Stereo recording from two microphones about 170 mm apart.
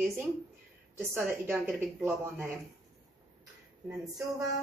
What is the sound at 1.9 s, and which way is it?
Speech, 15° right (ahead or behind).